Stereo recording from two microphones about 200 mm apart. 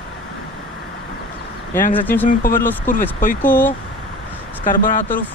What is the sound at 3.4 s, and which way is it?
Speech, 10° left (ahead or behind).